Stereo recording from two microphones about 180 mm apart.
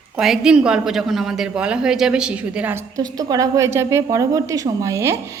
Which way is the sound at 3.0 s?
20° right (ahead or behind).